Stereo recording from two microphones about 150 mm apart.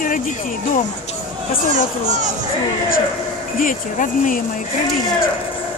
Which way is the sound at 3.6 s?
60° left (ahead or behind).